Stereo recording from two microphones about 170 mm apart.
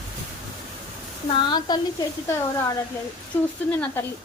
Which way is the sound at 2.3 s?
15° left (ahead or behind).